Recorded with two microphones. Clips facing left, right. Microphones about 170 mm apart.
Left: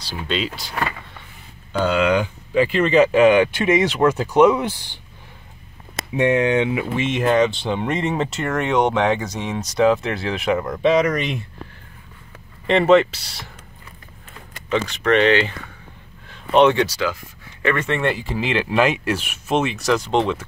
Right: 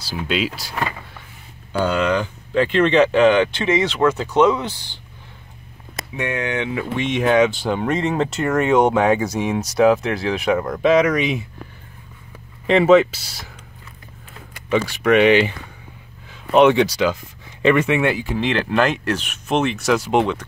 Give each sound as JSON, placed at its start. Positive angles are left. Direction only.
{"t": 0.0, "sound": "speech", "side_deg": -5}
{"t": 6.1, "sound": "speech", "side_deg": 25}
{"t": 7.0, "sound": "speech", "side_deg": 0}
{"t": 12.6, "sound": "speech", "side_deg": 0}
{"t": 14.5, "sound": "speech", "side_deg": -10}